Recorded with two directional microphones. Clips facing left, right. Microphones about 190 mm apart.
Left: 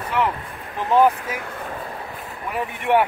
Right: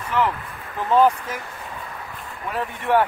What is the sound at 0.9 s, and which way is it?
Speech, 10° left (ahead or behind).